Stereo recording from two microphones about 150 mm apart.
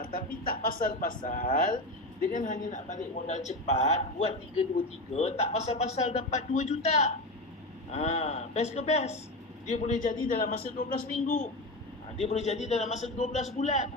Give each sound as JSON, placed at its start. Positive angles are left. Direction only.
{"t": 0.0, "sound": "a man's voice", "side_deg": 70}
{"t": 12.1, "sound": "a man's voice", "side_deg": 45}